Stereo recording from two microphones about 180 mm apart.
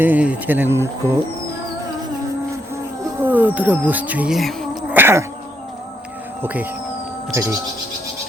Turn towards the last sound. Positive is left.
turn(degrees=-15)  # may be behind; listen again after turning